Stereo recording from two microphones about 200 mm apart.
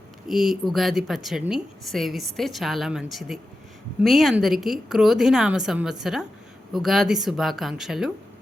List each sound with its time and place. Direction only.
0.3 s a woman's voice: centre (ahead or behind)